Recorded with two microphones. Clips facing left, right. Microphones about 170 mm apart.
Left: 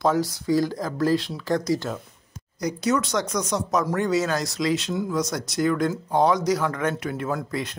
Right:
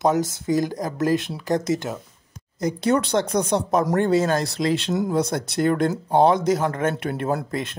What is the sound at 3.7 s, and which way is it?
Speech, 50° right (ahead or behind).